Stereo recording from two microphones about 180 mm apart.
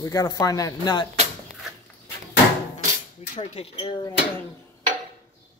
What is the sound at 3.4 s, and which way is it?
Speech, 30° left (ahead or behind).